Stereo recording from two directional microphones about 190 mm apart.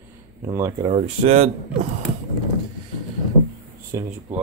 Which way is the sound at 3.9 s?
15° right (ahead or behind).